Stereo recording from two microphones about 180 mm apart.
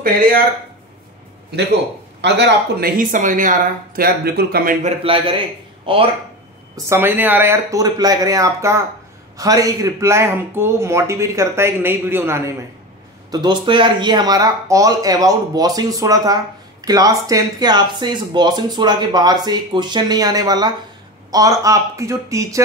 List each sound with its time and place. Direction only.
2.2 s speech: 70° right (ahead or behind)
3.0 s speech: 45° right (ahead or behind)
4.8 s a man's voice: 30° right (ahead or behind)
6.9 s speech: 10° right (ahead or behind)